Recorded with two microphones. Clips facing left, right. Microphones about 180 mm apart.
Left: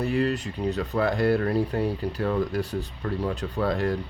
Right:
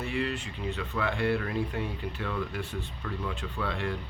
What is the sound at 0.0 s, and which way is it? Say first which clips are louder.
Speech: left 7 dB; 40° left (ahead or behind).